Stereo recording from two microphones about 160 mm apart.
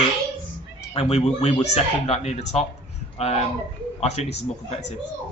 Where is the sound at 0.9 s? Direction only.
35° left (ahead or behind).